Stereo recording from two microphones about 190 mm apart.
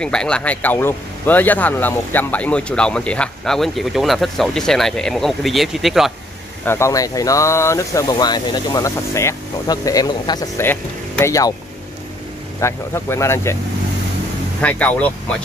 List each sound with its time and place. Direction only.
0.0 s speech: 5° left (ahead or behind)
6.6 s speech: 15° left (ahead or behind)
12.5 s speech: 15° left (ahead or behind)
14.6 s speech: 10° left (ahead or behind)